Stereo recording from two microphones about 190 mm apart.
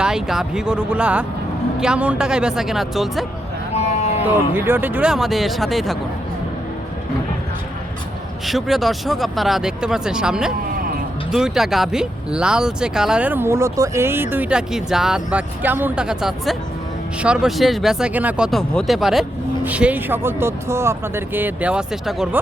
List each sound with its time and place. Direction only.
0.0 s speech: 5° right (ahead or behind)
3.8 s a sound: 35° left (ahead or behind)
4.5 s speech: 10° right (ahead or behind)
8.4 s speech: centre (ahead or behind)